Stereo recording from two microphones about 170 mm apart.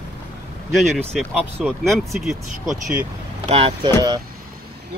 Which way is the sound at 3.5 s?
35° right (ahead or behind).